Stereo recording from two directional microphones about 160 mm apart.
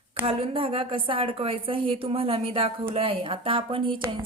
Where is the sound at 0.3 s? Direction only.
35° right (ahead or behind).